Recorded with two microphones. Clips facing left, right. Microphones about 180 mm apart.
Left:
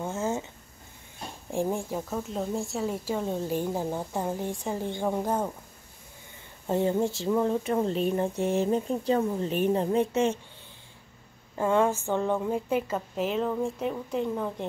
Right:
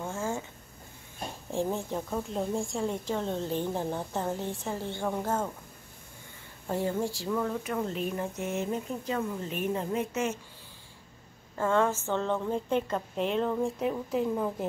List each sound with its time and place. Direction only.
0.0 s a sound: 20° left (ahead or behind)
1.5 s a woman's voice: 15° left (ahead or behind)
6.7 s speech: 20° left (ahead or behind)
11.5 s a woman's voice: 15° left (ahead or behind); by 14.7 s 5° right (ahead or behind)